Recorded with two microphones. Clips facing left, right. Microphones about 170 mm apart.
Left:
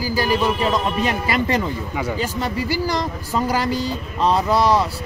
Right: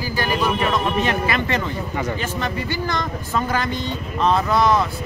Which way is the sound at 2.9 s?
35° left (ahead or behind).